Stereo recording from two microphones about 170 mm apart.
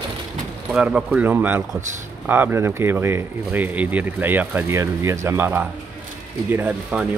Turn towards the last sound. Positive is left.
turn(degrees=-10)  # may be behind; listen again after turning